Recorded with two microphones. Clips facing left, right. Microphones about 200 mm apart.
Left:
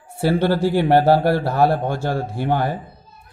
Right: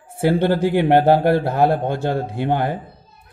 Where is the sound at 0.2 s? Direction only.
20° right (ahead or behind).